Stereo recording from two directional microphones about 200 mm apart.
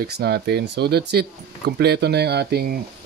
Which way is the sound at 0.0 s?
55° right (ahead or behind).